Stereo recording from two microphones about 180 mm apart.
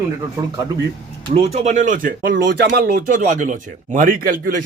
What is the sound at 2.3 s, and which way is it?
Speech, 75° right (ahead or behind).